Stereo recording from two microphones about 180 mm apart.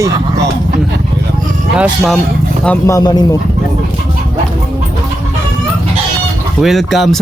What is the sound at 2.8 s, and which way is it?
Speech, 20° left (ahead or behind).